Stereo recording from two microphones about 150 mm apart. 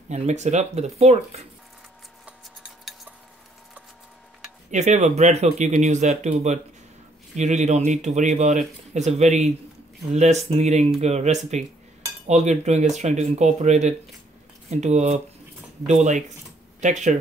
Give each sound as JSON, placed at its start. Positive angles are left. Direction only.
{"t": 0.1, "sound": "speech", "side_deg": -50}
{"t": 2.8, "sound": "cutlery", "side_deg": 0}
{"t": 4.6, "sound": "speech", "side_deg": -50}